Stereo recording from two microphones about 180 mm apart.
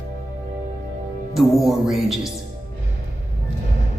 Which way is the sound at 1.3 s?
Centre (ahead or behind).